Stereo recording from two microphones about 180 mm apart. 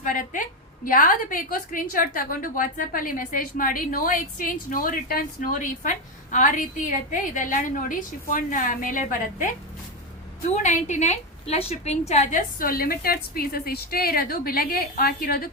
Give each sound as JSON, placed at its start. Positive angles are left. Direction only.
{"t": 0.0, "sound": "a sound", "side_deg": 50}
{"t": 0.9, "sound": "a woman's voice", "side_deg": 50}
{"t": 10.5, "sound": "a woman's voice", "side_deg": 45}